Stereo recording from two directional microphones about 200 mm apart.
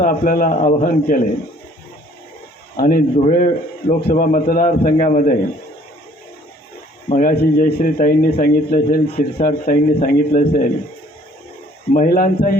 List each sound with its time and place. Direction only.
0.0 s speech: 45° left (ahead or behind)
2.7 s a man's voice: 45° left (ahead or behind)
7.1 s speech: 45° left (ahead or behind)
11.9 s speech: 45° left (ahead or behind)